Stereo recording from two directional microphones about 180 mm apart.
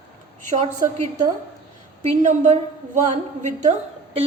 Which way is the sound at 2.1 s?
45° right (ahead or behind).